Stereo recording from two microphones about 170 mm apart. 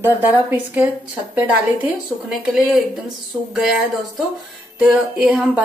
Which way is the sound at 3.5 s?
Centre (ahead or behind).